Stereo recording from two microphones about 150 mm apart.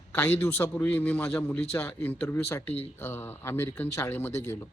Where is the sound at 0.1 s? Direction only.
10° left (ahead or behind).